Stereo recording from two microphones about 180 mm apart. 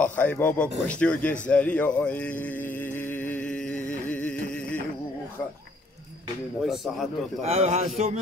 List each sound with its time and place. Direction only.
0.0 s speech: 10° left (ahead or behind)
1.5 s mantra: 5° left (ahead or behind)
6.6 s speech: centre (ahead or behind)
7.4 s a man's voice: 35° right (ahead or behind)